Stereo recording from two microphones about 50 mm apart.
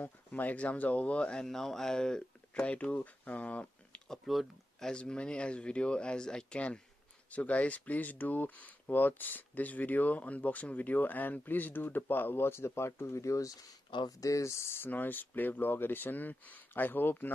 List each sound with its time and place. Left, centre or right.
0.0 s speech: left
1.4 s speech: centre
2.5 s speech: left
4.3 s speech: centre
4.7 s speech: centre; by 12.9 s left
13.0 s speech: left
14.9 s speech: left